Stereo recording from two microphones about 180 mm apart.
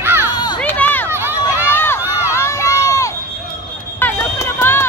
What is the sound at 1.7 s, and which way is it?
Run, 10° left (ahead or behind).